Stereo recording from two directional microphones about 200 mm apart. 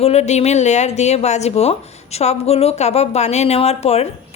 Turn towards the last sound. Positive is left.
turn(degrees=30)  # may be behind; listen again after turning